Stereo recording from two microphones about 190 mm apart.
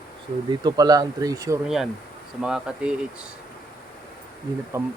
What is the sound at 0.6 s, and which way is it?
Speech, 20° right (ahead or behind).